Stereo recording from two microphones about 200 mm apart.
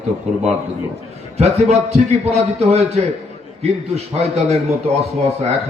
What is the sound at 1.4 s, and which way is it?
A man's voice, 35° right (ahead or behind).